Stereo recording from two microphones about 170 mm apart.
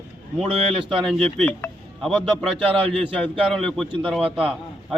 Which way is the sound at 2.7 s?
35° right (ahead or behind).